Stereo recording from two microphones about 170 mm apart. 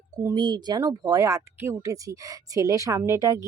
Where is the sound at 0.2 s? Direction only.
25° right (ahead or behind).